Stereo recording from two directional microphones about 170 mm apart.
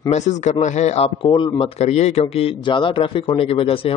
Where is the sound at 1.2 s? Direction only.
25° left (ahead or behind).